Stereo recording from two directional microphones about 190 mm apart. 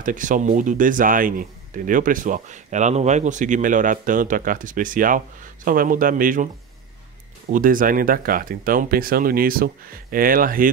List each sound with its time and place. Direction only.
0.0 s speech: 45° right (ahead or behind)
7.5 s speech: 45° right (ahead or behind)